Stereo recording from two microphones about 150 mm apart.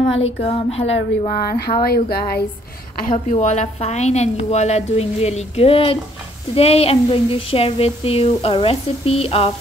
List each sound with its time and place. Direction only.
0.1 s a woman's voice: 45° left (ahead or behind)
1.3 s a sound: 75° left (ahead or behind)
3.1 s a woman's voice: 50° left (ahead or behind)